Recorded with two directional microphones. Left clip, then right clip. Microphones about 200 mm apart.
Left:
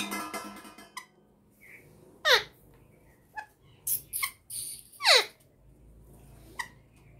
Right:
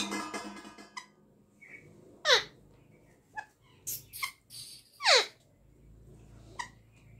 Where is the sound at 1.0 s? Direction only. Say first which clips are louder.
Left 1 dB; 20° left (ahead or behind).